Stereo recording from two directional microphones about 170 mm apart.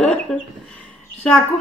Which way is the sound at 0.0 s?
5° left (ahead or behind).